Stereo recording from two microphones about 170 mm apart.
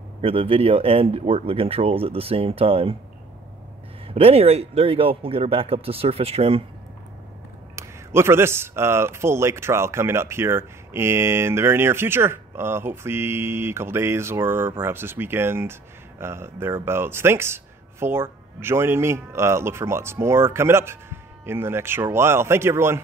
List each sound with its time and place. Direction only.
0.2 s speech: 35° right (ahead or behind)
4.1 s speech: 35° right (ahead or behind)
7.7 s a man's voice: 15° right (ahead or behind)